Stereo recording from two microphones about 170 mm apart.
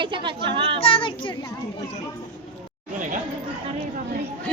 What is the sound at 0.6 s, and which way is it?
Child singing, 35° left (ahead or behind).